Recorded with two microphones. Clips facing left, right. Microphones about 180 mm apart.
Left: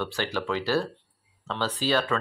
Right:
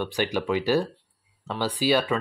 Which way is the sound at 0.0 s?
15° right (ahead or behind).